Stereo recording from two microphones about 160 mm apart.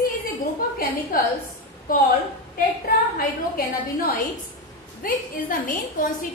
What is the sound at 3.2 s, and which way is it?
A woman's voice, 65° left (ahead or behind).